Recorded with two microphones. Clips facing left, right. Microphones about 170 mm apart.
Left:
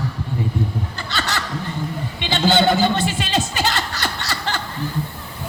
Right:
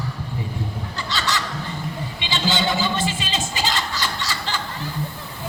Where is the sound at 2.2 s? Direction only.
60° left (ahead or behind).